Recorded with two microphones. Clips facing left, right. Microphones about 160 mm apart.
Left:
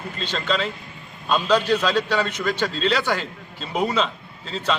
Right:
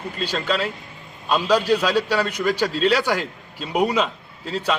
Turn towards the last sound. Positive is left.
turn(degrees=-10)  # may be behind; listen again after turning